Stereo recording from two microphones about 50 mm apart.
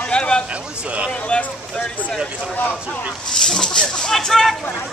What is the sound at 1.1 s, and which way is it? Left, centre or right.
Speech, left.